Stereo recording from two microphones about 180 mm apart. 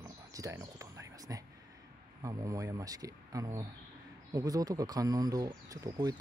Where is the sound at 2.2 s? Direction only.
20° right (ahead or behind).